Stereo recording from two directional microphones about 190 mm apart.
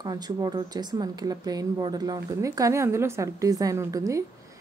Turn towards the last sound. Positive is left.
turn(degrees=-15)  # may be behind; listen again after turning